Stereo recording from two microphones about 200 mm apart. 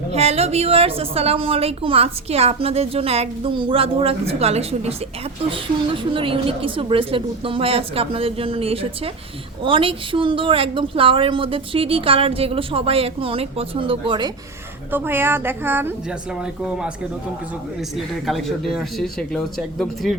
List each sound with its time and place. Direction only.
0.1 s a woman's voice: 30° right (ahead or behind)
14.9 s speech: 10° right (ahead or behind)
17.9 s speech: centre (ahead or behind)